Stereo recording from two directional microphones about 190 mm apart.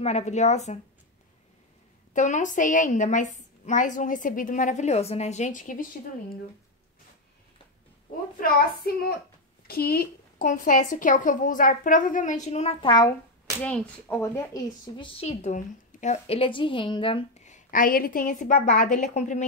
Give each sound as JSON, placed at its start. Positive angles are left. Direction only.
{"t": 0.0, "sound": "a woman's voice", "side_deg": 35}
{"t": 2.1, "sound": "a woman's voice", "side_deg": 40}
{"t": 8.4, "sound": "a woman's voice", "side_deg": 55}
{"t": 13.6, "sound": "speech", "side_deg": 5}
{"t": 15.1, "sound": "a woman's voice", "side_deg": 35}